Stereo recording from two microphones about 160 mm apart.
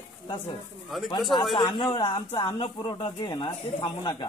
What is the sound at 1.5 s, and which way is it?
Speech, 30° left (ahead or behind).